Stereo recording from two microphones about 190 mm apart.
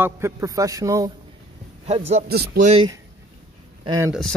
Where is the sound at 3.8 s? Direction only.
20° right (ahead or behind).